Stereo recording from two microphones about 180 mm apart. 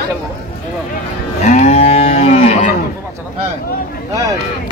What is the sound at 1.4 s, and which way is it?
Moo, 40° left (ahead or behind).